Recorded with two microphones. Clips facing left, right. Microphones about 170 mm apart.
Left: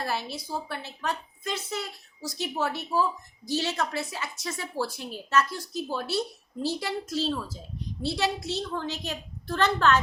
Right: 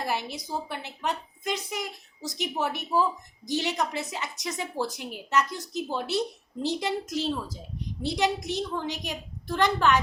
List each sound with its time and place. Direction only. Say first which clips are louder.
0.0 s a woman's voice: right 1 dB; 15° right (ahead or behind)